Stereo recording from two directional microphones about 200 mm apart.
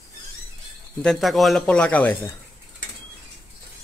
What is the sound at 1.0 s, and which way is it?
Speech, centre (ahead or behind).